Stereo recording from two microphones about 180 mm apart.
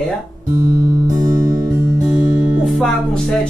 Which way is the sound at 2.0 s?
Centre (ahead or behind).